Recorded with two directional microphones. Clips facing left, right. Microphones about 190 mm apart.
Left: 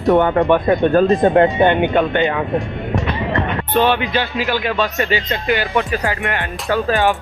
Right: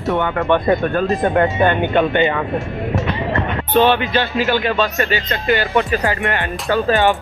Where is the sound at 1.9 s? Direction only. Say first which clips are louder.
Right 1 dB; centre (ahead or behind).